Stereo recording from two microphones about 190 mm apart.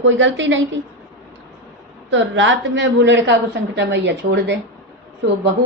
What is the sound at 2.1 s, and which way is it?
A woman's voice, 75° right (ahead or behind).